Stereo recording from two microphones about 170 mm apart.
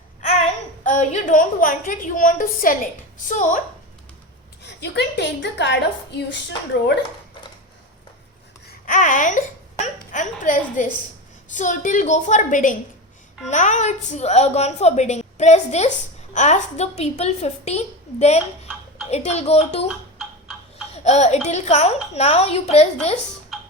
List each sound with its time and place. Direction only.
0.9 s a woman's voice: 45° left (ahead or behind)
4.6 s a woman's voice: 85° left
8.9 s a sound: 50° left (ahead or behind)
11.5 s a woman's voice: 50° left (ahead or behind)
20.9 s a sound: 40° left (ahead or behind)
21.4 s a woman's voice: 40° left (ahead or behind)